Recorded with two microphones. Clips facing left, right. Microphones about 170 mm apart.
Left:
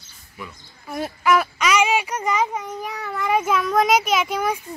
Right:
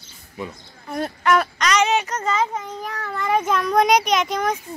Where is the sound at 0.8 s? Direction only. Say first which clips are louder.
Even; 5° left (ahead or behind).